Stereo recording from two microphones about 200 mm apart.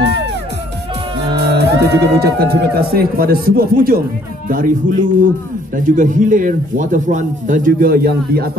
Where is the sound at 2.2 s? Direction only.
50° right (ahead or behind).